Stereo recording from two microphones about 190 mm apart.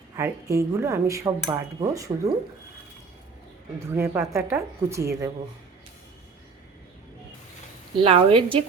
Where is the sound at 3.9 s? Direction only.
15° right (ahead or behind).